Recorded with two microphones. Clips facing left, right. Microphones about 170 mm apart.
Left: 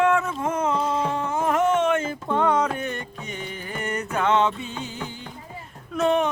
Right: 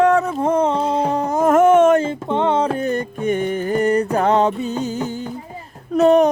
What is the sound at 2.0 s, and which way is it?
Music, 25° right (ahead or behind).